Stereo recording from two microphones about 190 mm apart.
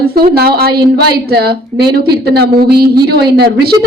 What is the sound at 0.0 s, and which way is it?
A woman's voice, 55° right (ahead or behind).